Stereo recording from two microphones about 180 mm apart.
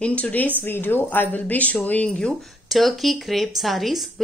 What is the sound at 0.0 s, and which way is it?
Speech, 5° left (ahead or behind).